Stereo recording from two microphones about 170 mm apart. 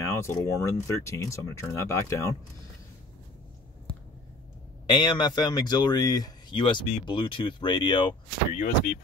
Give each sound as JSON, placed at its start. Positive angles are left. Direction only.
{"t": 0.1, "sound": "speech", "side_deg": 15}
{"t": 4.8, "sound": "speech", "side_deg": 25}
{"t": 8.5, "sound": "speech", "side_deg": 55}